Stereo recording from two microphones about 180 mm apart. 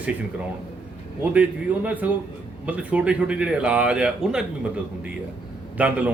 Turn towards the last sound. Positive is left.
turn(degrees=-5)  # may be behind; listen again after turning